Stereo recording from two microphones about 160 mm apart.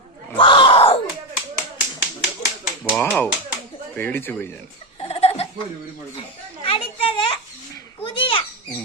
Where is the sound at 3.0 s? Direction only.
10° left (ahead or behind).